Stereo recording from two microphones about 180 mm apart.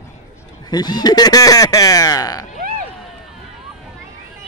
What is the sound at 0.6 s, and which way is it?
Speech, 25° left (ahead or behind).